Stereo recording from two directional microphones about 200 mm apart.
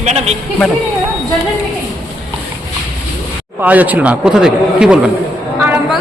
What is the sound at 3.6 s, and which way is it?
A man's voice, 10° right (ahead or behind).